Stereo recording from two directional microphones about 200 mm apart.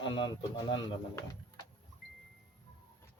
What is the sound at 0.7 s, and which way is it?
Speech, 20° left (ahead or behind).